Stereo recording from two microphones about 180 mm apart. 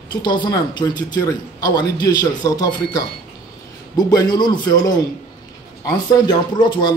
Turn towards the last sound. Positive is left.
turn(degrees=25)  # may be behind; listen again after turning